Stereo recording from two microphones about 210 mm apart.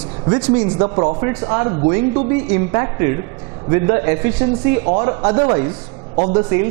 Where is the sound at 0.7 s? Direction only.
25° right (ahead or behind).